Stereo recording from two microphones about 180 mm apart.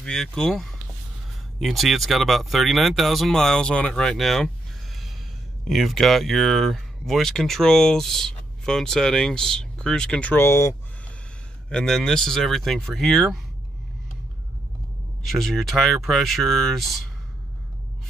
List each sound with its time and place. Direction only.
0.0 s speech: 5° left (ahead or behind)
5.7 s speech: centre (ahead or behind)
11.7 s speech: 5° left (ahead or behind)
15.2 s speech: centre (ahead or behind)